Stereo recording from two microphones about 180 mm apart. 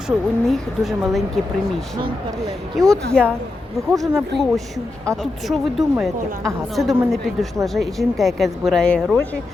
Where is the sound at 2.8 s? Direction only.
Centre (ahead or behind).